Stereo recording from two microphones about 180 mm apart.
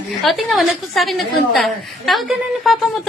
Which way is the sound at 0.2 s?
Centre (ahead or behind).